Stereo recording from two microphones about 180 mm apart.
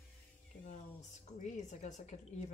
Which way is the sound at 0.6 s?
45° left (ahead or behind).